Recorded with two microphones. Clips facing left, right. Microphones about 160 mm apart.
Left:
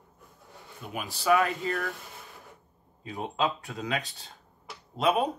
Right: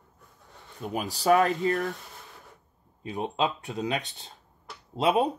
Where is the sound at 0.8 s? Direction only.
40° right (ahead or behind).